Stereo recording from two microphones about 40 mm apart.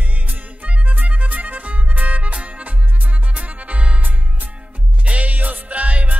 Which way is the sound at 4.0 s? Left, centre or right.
Right.